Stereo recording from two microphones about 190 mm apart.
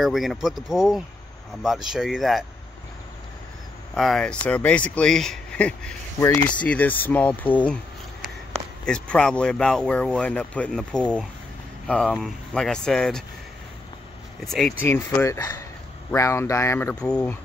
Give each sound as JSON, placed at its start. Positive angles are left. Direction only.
{"t": 0.0, "sound": "speech", "side_deg": 0}
{"t": 3.9, "sound": "speech", "side_deg": 0}
{"t": 8.8, "sound": "speech", "side_deg": 5}
{"t": 14.4, "sound": "speech", "side_deg": 5}
{"t": 14.9, "sound": "speech", "side_deg": 15}